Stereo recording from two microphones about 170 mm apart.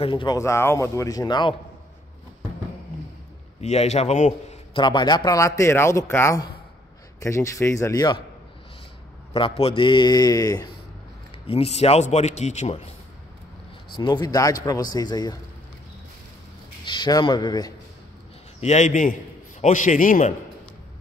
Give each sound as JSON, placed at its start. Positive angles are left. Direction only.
{"t": 0.0, "sound": "speech", "side_deg": 30}
{"t": 0.4, "sound": "speech", "side_deg": 15}
{"t": 3.6, "sound": "a man's voice", "side_deg": 40}
{"t": 4.7, "sound": "speech", "side_deg": 25}
{"t": 9.3, "sound": "speech", "side_deg": 35}
{"t": 11.3, "sound": "a man's voice", "side_deg": 35}
{"t": 13.9, "sound": "speech", "side_deg": 25}
{"t": 16.8, "sound": "speech", "side_deg": 25}
{"t": 18.6, "sound": "a man's voice", "side_deg": 45}